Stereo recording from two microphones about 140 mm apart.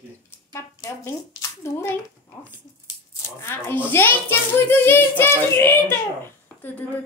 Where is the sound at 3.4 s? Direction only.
15° left (ahead or behind).